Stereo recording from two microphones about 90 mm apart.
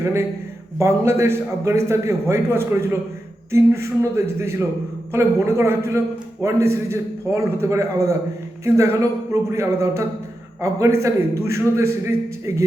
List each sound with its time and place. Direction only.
0.0 s a man's voice: 30° right (ahead or behind)